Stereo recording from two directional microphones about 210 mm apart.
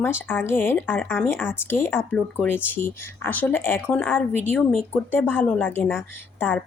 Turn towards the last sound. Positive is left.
turn(degrees=10)  # may be behind; listen again after turning